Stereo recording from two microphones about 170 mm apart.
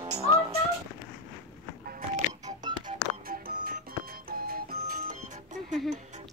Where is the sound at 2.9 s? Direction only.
60° right (ahead or behind).